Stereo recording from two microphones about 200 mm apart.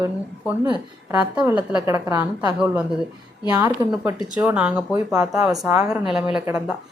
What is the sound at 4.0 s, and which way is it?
A woman's voice, 5° right (ahead or behind).